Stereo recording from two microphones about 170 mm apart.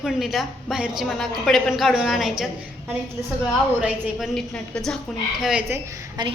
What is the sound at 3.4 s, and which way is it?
A woman's voice, 5° right (ahead or behind).